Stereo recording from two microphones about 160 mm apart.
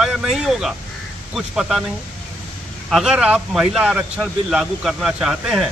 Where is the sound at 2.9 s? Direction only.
5° right (ahead or behind).